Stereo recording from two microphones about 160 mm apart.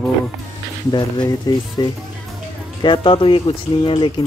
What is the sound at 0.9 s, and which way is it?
Speech, 25° left (ahead or behind).